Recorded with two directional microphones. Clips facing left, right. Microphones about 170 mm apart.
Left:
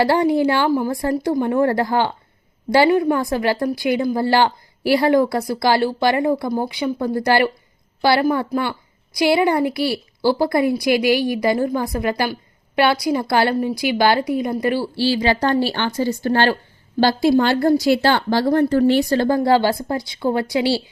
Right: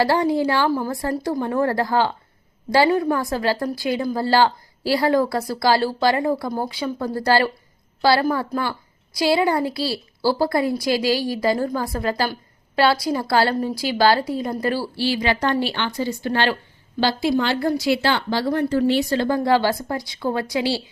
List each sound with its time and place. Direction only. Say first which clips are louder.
0.0 s a woman's voice: left 3 dB; 25° left (ahead or behind)
14.9 s a woman's voice: left 3 dB; 30° left (ahead or behind)